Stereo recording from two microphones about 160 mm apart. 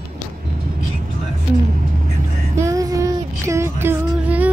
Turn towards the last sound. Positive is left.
turn(degrees=-10)  # may be behind; listen again after turning